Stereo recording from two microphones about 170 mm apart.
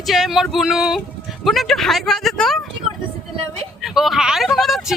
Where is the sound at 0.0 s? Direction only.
Centre (ahead or behind).